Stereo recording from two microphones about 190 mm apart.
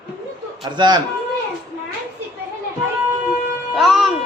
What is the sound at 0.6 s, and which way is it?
Speech, 25° right (ahead or behind).